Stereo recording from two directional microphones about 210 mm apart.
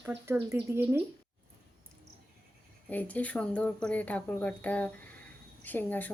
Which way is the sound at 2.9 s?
10° left (ahead or behind).